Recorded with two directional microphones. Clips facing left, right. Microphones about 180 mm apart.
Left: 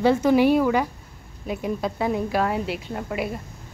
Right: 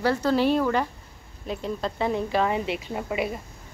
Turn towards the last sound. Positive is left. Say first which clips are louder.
# even
turn(degrees=0)  # may be behind; listen again after turning